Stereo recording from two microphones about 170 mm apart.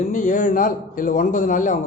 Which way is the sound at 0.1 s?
50° left (ahead or behind).